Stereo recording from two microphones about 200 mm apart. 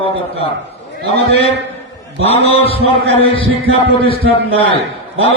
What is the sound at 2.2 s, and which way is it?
A man's voice, 30° left (ahead or behind).